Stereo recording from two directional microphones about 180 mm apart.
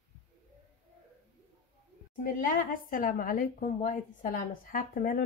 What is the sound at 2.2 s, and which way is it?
A woman's voice, 50° left (ahead or behind).